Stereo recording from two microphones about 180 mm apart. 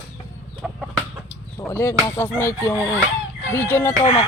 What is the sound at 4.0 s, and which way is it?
Speech, 30° left (ahead or behind).